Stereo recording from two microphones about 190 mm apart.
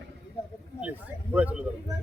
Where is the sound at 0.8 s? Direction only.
10° right (ahead or behind).